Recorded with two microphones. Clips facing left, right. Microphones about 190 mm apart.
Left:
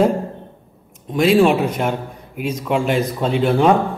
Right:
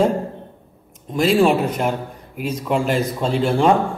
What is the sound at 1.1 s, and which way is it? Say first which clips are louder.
A man's voice: left 2 dB; centre (ahead or behind).